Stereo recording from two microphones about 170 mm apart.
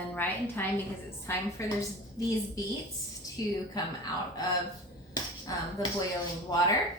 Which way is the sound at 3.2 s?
20° left (ahead or behind).